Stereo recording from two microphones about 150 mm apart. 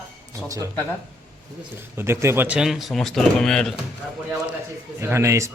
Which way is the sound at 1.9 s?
15° right (ahead or behind).